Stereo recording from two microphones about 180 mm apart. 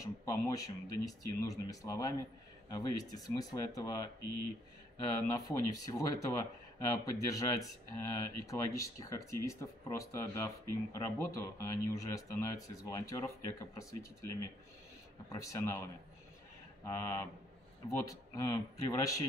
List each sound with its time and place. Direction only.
0.0 s speech: 15° left (ahead or behind)
5.4 s speech: 20° left (ahead or behind)
16.8 s speech: 15° left (ahead or behind)